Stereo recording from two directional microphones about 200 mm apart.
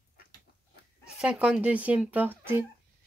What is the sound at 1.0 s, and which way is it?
Speech, 5° right (ahead or behind).